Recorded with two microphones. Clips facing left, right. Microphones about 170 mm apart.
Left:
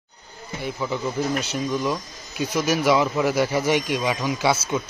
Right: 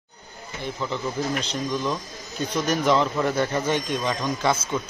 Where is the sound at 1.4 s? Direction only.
5° left (ahead or behind).